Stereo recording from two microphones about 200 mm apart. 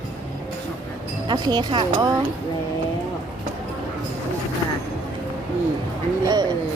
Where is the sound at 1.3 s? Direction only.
20° right (ahead or behind).